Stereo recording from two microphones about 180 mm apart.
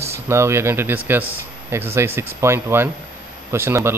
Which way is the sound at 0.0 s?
15° right (ahead or behind).